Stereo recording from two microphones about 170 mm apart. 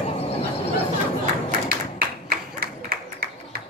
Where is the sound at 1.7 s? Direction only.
60° right (ahead or behind).